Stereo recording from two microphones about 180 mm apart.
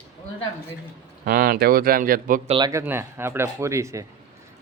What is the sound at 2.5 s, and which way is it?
Speech, 25° right (ahead or behind).